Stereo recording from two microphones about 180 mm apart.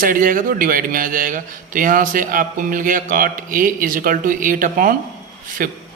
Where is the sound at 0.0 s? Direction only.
50° right (ahead or behind).